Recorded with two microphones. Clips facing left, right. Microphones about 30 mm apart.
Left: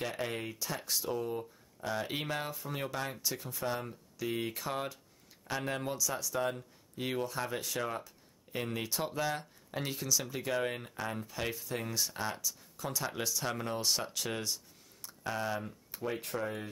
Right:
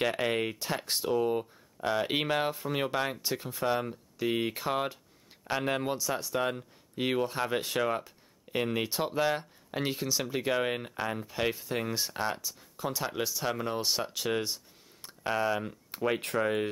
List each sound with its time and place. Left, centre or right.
0.0 s speech: right
15.9 s speech: right